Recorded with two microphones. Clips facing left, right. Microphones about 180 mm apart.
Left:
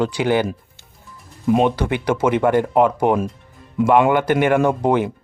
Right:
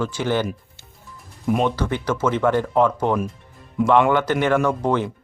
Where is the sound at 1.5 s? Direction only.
20° left (ahead or behind).